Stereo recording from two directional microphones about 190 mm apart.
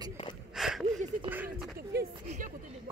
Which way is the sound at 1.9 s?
60° right (ahead or behind).